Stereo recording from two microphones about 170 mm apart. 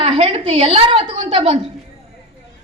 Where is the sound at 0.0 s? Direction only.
35° right (ahead or behind).